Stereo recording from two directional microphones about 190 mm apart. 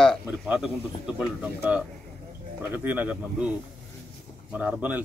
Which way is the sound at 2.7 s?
10° right (ahead or behind).